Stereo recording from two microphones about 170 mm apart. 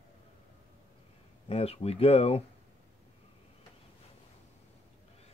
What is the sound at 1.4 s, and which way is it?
Speech, 35° left (ahead or behind).